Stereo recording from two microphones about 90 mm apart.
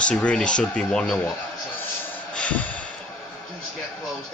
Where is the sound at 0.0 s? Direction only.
10° left (ahead or behind).